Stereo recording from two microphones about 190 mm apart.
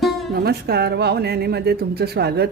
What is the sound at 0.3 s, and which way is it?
Speech, 55° right (ahead or behind).